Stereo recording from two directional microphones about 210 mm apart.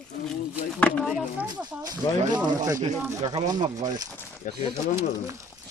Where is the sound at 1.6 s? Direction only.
15° right (ahead or behind).